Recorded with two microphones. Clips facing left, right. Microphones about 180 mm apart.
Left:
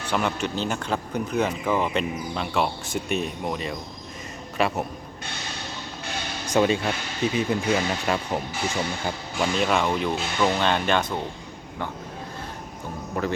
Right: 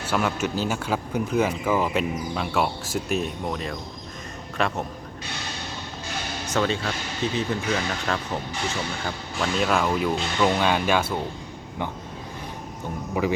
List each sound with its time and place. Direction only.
0.0 s speech: 5° right (ahead or behind)
6.5 s speech: 15° left (ahead or behind)
9.3 s speech: centre (ahead or behind)
13.2 s speech: 10° right (ahead or behind)